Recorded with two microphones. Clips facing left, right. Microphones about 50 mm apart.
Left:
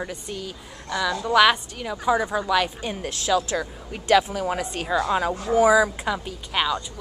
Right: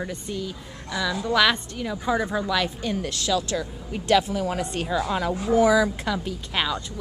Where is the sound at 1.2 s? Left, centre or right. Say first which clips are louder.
Left 4 dB; centre.